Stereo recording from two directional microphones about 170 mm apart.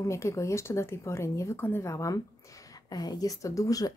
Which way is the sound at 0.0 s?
15° left (ahead or behind).